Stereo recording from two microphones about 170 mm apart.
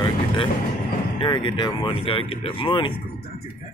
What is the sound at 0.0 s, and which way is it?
Vehicle, 30° left (ahead or behind).